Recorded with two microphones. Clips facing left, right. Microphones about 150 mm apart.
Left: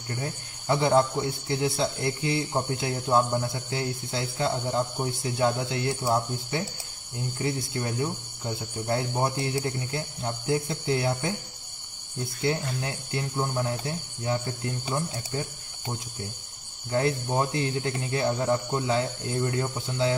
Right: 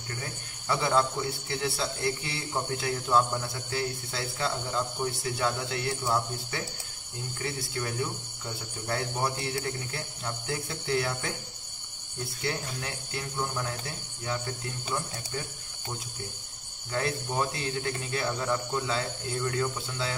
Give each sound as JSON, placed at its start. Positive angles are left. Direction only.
{"t": 0.2, "sound": "speech", "side_deg": 25}
{"t": 12.4, "sound": "speech", "side_deg": 25}
{"t": 16.9, "sound": "speech", "side_deg": 25}